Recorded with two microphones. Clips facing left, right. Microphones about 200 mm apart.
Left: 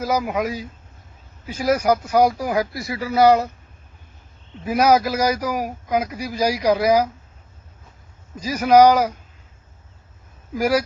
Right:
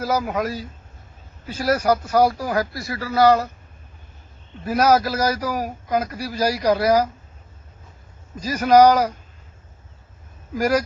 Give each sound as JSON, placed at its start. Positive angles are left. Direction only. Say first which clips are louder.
{"t": 0.0, "sound": "a man's voice", "louder": "left 1 dB", "side_deg": 10}
{"t": 4.6, "sound": "a man's voice", "louder": "left 1 dB", "side_deg": 10}
{"t": 8.4, "sound": "a man's voice", "louder": "left 1 dB", "side_deg": 10}
{"t": 10.5, "sound": "a man's voice", "louder": "even", "side_deg": 10}